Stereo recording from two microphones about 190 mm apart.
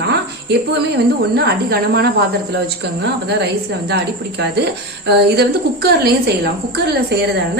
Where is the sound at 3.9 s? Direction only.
60° right (ahead or behind).